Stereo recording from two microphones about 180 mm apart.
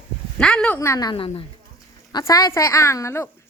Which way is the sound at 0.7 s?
15° left (ahead or behind).